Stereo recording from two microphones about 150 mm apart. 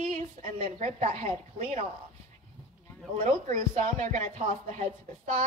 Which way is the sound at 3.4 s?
60° right (ahead or behind).